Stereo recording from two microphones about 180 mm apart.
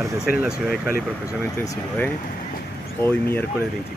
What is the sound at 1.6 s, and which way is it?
Speech, 15° left (ahead or behind).